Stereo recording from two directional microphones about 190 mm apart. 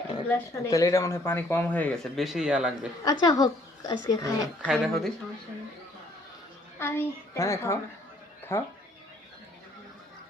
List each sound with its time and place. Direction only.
0.3 s speech: 15° left (ahead or behind); by 2.9 s 5° right (ahead or behind)
3.0 s speech: 20° left (ahead or behind)
4.6 s speech: 5° right (ahead or behind)
6.7 s speech: 10° left (ahead or behind)